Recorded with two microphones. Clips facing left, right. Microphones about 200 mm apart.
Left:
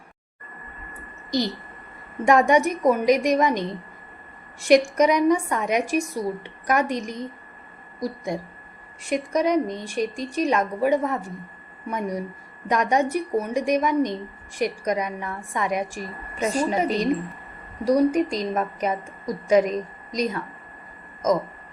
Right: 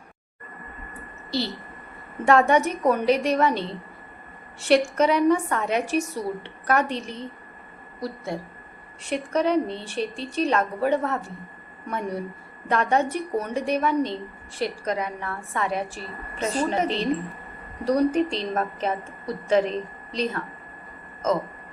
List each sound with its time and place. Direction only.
2.2 s a woman's voice: 15° left (ahead or behind)
4.9 s a woman's voice: 15° left (ahead or behind)